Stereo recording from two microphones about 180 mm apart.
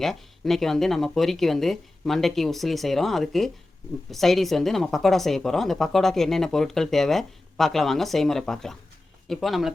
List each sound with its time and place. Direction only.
0.0 s speech: centre (ahead or behind)